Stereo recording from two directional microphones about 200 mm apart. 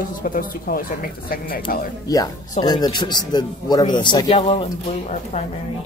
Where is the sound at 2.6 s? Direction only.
20° left (ahead or behind).